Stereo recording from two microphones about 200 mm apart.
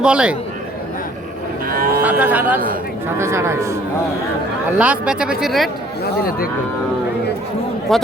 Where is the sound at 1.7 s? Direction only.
45° right (ahead or behind).